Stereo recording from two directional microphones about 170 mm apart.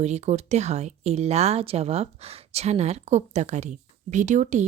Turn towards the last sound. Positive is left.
turn(degrees=-45)  # may be behind; listen again after turning